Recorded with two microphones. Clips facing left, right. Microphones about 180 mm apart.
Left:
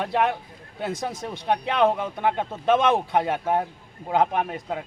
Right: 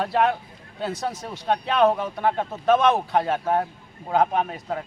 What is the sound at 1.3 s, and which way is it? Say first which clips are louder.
Speech: right 1 dB; 15° left (ahead or behind).